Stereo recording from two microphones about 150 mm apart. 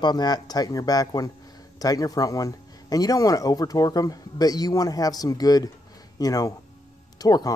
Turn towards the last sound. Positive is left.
turn(degrees=25)  # may be behind; listen again after turning